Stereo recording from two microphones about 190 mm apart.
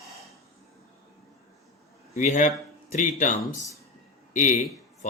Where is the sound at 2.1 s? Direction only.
40° left (ahead or behind).